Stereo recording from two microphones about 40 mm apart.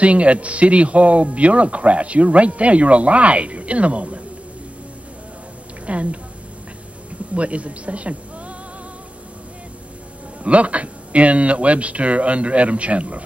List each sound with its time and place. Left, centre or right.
0.0 s speech: right
5.9 s speech: right
7.3 s speech: right
10.4 s speech: right